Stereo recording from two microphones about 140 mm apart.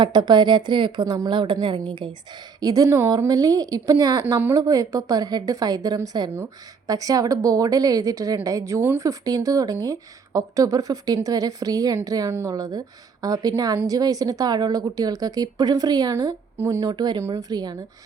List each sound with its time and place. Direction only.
0.0 s a woman's voice: 35° right (ahead or behind)
2.6 s a woman's voice: 25° right (ahead or behind)
16.8 s a woman's voice: 30° right (ahead or behind)